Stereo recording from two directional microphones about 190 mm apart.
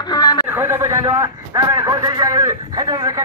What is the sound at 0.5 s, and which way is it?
A man's voice, 10° right (ahead or behind).